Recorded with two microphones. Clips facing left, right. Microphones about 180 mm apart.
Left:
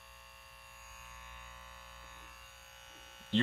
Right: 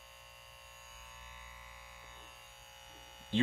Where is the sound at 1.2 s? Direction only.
15° right (ahead or behind).